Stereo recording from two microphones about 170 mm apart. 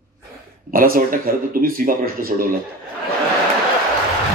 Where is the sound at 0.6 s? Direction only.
55° right (ahead or behind).